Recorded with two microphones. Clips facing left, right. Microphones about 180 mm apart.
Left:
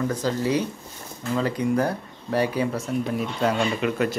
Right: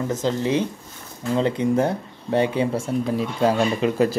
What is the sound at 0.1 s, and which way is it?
Speech, 25° right (ahead or behind).